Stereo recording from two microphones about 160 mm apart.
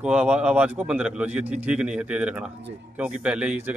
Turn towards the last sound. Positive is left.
turn(degrees=-5)  # may be behind; listen again after turning